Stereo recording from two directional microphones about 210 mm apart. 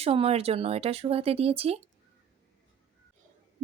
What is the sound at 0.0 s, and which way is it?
Speech, 30° right (ahead or behind).